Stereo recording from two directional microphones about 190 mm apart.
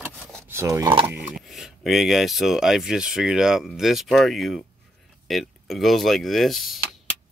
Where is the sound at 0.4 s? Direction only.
15° right (ahead or behind).